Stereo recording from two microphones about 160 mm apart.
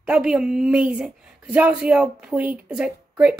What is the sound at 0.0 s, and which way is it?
A woman's voice, 5° right (ahead or behind).